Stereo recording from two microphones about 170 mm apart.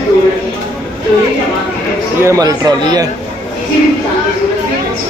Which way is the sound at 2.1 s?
20° right (ahead or behind).